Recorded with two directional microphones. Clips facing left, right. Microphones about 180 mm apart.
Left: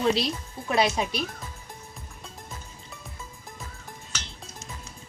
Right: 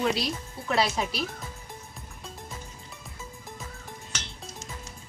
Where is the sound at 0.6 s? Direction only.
20° left (ahead or behind).